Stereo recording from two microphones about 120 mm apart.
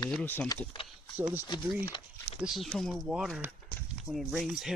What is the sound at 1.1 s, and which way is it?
Speech, 15° right (ahead or behind).